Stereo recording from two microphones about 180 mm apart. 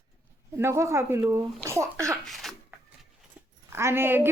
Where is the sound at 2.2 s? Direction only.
Centre (ahead or behind).